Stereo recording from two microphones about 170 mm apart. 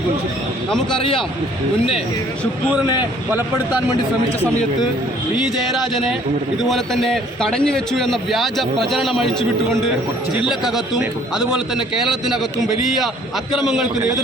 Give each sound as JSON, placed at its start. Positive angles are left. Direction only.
{"t": 0.9, "sound": "a man's voice", "side_deg": 30}
{"t": 6.6, "sound": "a man's voice", "side_deg": 0}
{"t": 10.4, "sound": "a man's voice", "side_deg": 0}
{"t": 13.6, "sound": "a man's voice", "side_deg": 0}